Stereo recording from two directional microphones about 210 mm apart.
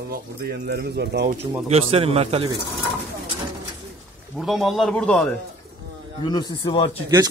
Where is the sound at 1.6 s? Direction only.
30° right (ahead or behind).